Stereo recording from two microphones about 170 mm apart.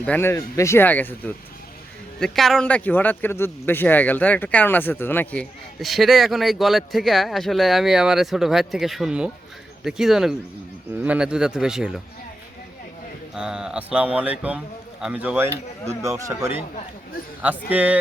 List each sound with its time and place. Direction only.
0.0 s speech: 10° left (ahead or behind)
13.3 s speech: 5° right (ahead or behind)
17.7 s speech: 10° right (ahead or behind)